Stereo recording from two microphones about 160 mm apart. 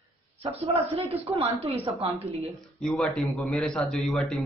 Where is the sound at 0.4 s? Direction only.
40° right (ahead or behind).